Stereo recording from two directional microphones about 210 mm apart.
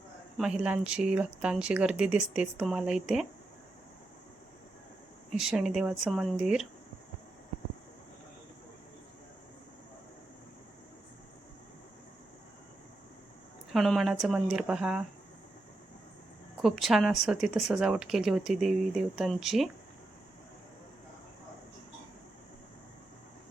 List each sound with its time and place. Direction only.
0.3 s speech: 5° right (ahead or behind)
5.3 s speech: 5° right (ahead or behind)
13.7 s speech: centre (ahead or behind)
16.6 s speech: centre (ahead or behind)